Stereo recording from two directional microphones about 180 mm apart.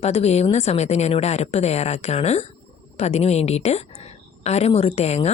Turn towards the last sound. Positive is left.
turn(degrees=35)  # may be behind; listen again after turning